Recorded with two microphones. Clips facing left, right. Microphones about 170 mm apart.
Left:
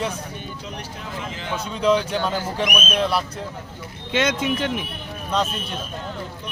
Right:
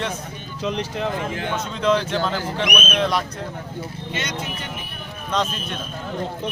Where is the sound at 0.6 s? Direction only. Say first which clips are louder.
Right 10 dB; 90° right; by 1.5 s 55° right (ahead or behind).